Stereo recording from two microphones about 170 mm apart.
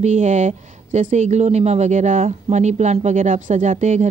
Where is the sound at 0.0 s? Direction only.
45° right (ahead or behind).